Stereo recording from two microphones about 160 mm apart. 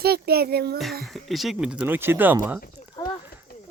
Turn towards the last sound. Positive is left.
turn(degrees=25)  # may be behind; listen again after turning